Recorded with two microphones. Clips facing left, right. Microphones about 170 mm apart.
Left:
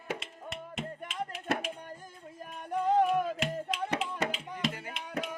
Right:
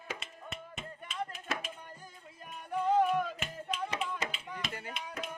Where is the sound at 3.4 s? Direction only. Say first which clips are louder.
Left 5 dB; 80° left.